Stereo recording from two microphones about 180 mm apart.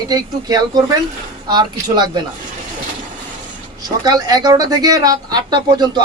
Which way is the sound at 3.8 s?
20° right (ahead or behind).